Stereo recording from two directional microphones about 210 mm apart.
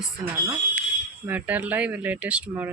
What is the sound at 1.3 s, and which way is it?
Speech, 10° right (ahead or behind).